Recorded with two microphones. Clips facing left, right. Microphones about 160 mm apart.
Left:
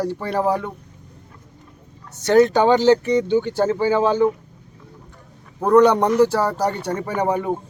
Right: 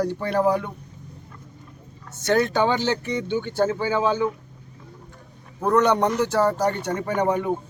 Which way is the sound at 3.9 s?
40° left (ahead or behind).